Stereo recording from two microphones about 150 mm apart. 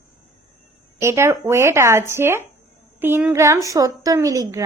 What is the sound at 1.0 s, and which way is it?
A woman's voice, 15° right (ahead or behind).